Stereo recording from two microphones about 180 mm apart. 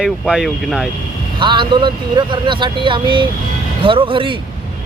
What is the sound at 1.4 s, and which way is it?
Speech, 25° right (ahead or behind).